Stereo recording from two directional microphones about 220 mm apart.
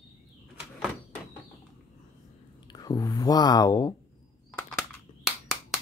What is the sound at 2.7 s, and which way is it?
Speech, 15° left (ahead or behind).